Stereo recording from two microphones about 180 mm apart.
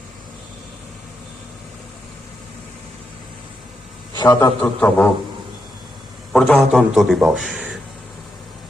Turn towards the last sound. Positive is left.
turn(degrees=0)  # may be behind; listen again after turning